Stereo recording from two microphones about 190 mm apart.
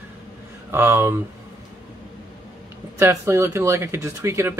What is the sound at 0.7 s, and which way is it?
Speech, 10° right (ahead or behind).